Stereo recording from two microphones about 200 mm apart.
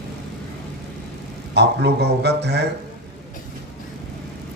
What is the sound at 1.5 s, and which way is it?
A man's voice, 55° right (ahead or behind).